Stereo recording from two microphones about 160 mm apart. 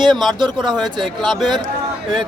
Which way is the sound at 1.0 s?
Centre (ahead or behind).